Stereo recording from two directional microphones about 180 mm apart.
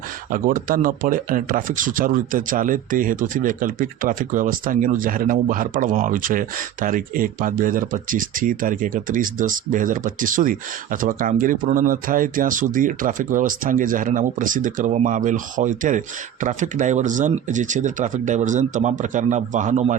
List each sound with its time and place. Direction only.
0.3 s speech: 50° right (ahead or behind)